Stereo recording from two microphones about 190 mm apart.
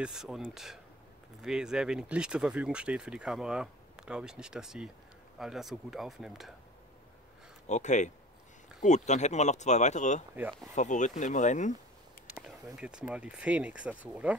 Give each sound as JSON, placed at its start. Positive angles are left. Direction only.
{"t": 0.0, "sound": "speech", "side_deg": 0}
{"t": 7.6, "sound": "speech", "side_deg": 40}
{"t": 10.3, "sound": "speech", "side_deg": -10}
{"t": 10.7, "sound": "speech", "side_deg": 40}
{"t": 12.3, "sound": "speech", "side_deg": -5}